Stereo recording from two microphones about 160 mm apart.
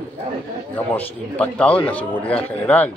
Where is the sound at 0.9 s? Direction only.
10° left (ahead or behind).